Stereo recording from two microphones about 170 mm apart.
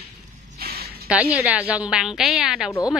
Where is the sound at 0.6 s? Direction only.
65° right (ahead or behind).